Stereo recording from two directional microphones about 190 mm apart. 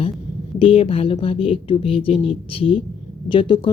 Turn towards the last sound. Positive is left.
turn(degrees=25)  # may be behind; listen again after turning